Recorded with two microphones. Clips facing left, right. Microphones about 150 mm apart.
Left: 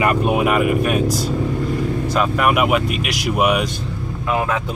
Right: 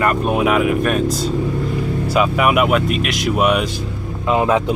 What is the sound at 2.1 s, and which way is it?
Speech, 5° right (ahead or behind).